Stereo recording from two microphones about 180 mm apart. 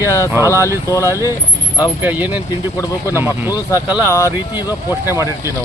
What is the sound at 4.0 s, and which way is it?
Speech, 15° left (ahead or behind).